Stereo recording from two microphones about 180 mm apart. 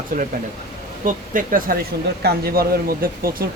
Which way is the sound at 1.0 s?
50° right (ahead or behind).